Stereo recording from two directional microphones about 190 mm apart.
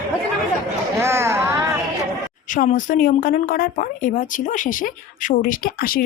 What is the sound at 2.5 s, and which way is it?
A woman's voice, 40° left (ahead or behind).